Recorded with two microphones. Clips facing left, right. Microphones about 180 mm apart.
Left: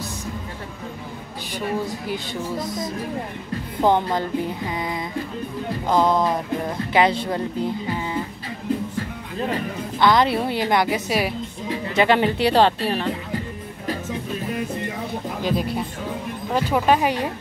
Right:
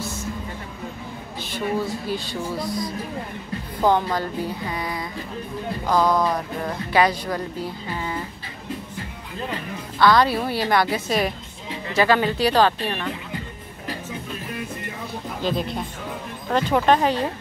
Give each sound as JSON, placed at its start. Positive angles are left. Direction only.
{"t": 1.5, "sound": "speech", "side_deg": 15}
{"t": 3.8, "sound": "a woman's voice", "side_deg": 20}
{"t": 9.9, "sound": "a woman's voice", "side_deg": 20}
{"t": 11.9, "sound": "a woman's voice", "side_deg": 20}
{"t": 15.4, "sound": "speech", "side_deg": 10}